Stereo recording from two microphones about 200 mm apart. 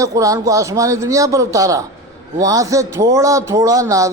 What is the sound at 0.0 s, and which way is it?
A man's voice, 15° right (ahead or behind).